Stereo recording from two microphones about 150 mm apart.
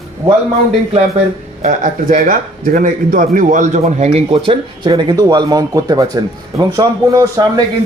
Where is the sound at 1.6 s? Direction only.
60° right (ahead or behind); by 4.4 s 45° right (ahead or behind).